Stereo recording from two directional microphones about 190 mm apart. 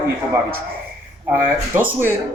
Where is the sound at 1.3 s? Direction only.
10° right (ahead or behind).